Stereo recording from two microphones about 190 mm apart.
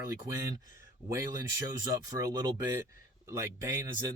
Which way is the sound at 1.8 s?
20° right (ahead or behind).